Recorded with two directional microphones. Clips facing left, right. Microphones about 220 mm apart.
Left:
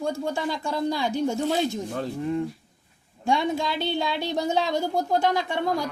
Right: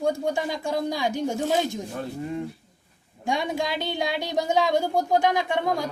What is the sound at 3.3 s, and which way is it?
A woman's voice, 15° right (ahead or behind).